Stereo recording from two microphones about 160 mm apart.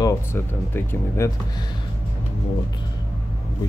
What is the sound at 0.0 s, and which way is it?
Speech, 15° left (ahead or behind).